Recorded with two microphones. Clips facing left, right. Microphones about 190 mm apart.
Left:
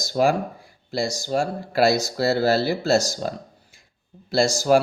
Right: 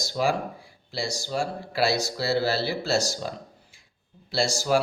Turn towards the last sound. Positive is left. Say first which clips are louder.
# left 6 dB
turn(degrees=45)  # may be behind; listen again after turning